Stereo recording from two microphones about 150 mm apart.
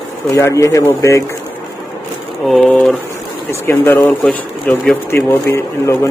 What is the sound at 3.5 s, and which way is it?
Speech, 15° left (ahead or behind).